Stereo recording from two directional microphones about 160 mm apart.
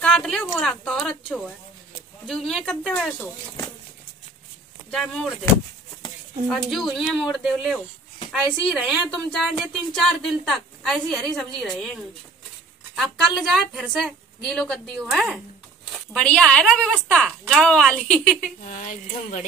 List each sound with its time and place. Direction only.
0.0 s a sound: 5° left (ahead or behind)
0.6 s a woman's voice: 5° left (ahead or behind)
4.9 s a woman's voice: 5° left (ahead or behind)
6.4 s a woman's voice: centre (ahead or behind)
18.7 s speech: 50° left (ahead or behind)